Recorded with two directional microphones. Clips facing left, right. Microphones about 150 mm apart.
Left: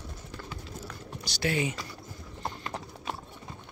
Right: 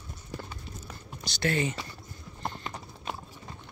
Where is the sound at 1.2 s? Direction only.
10° left (ahead or behind).